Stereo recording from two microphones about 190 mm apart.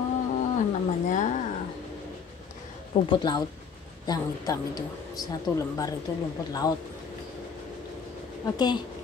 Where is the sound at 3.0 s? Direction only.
25° left (ahead or behind).